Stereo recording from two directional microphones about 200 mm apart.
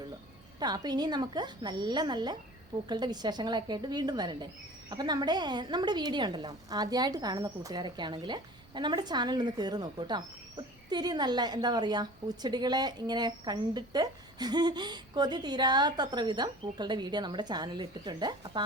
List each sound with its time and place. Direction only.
0.6 s a woman's voice: 20° right (ahead or behind)